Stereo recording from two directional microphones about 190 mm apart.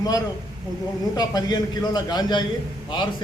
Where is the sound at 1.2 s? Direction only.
20° left (ahead or behind).